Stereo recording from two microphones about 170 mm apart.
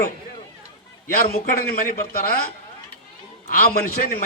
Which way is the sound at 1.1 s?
60° left (ahead or behind).